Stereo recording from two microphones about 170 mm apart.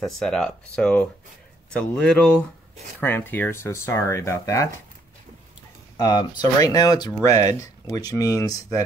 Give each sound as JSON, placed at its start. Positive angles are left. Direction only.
{"t": 0.0, "sound": "speech", "side_deg": 5}
{"t": 6.0, "sound": "speech", "side_deg": 25}